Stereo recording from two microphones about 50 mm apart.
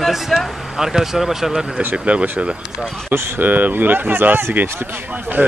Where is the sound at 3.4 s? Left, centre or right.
Right.